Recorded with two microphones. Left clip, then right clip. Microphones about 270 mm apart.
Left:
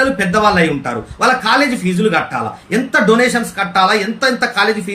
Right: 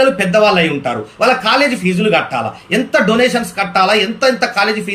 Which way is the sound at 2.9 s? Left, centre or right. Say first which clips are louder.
Left 1 dB; left.